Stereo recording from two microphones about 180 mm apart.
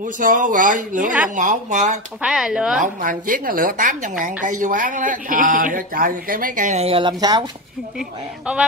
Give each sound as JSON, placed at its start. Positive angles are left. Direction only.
{"t": 0.2, "sound": "speech", "side_deg": -50}
{"t": 2.2, "sound": "speech", "side_deg": -5}
{"t": 2.8, "sound": "speech", "side_deg": -45}
{"t": 8.5, "sound": "chicken", "side_deg": -5}